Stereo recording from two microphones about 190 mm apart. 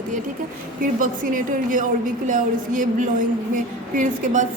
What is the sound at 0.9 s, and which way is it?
A woman's voice, 45° right (ahead or behind).